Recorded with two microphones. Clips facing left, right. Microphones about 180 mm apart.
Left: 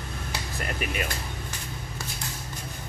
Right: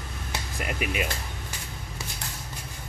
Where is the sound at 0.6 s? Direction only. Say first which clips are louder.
Right 2 dB; 15° right (ahead or behind).